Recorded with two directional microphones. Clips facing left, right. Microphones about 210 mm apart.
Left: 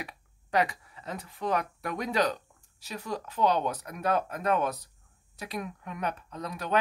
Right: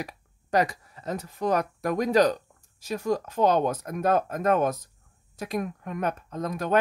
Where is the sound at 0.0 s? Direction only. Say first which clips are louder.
Right 5 dB; 40° right (ahead or behind).